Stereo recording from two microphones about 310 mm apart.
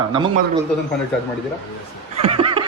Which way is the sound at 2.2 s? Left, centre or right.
Centre.